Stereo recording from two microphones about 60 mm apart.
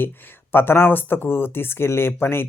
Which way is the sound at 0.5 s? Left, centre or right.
Left.